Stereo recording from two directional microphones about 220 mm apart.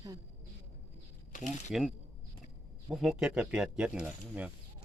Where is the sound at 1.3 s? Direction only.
35° left (ahead or behind).